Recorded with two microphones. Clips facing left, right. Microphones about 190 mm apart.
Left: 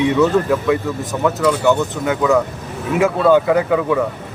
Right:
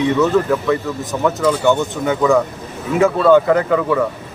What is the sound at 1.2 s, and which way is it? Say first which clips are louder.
Speech: even; centre (ahead or behind).